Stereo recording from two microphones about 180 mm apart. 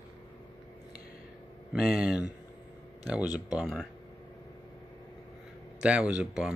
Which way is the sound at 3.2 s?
20° left (ahead or behind).